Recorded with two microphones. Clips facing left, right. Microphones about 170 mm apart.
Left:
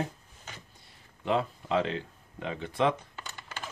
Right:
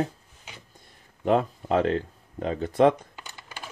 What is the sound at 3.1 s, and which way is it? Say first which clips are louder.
Typing: even; 15° right (ahead or behind).